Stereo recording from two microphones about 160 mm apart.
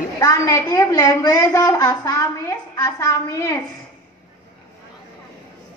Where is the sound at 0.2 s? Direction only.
25° left (ahead or behind).